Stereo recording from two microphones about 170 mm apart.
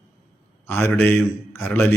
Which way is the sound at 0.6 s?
10° left (ahead or behind).